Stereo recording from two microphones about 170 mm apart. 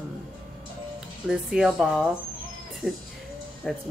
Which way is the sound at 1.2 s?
5° right (ahead or behind).